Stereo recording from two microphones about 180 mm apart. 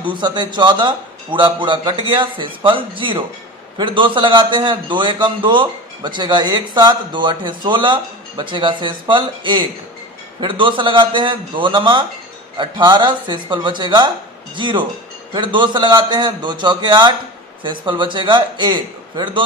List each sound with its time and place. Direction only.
0.0 s a man's voice: 25° right (ahead or behind)